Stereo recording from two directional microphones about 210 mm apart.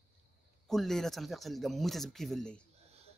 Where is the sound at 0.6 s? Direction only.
Centre (ahead or behind).